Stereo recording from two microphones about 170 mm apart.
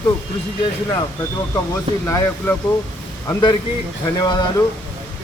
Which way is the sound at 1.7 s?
15° left (ahead or behind).